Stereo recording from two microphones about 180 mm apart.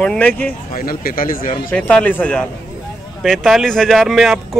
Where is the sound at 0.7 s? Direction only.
55° left (ahead or behind).